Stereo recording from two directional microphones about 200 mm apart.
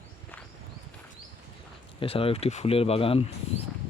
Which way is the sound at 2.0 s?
30° left (ahead or behind).